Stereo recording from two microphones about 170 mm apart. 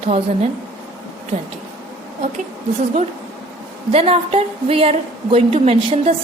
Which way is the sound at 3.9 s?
35° right (ahead or behind).